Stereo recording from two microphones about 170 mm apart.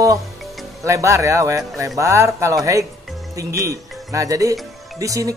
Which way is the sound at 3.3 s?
20° right (ahead or behind).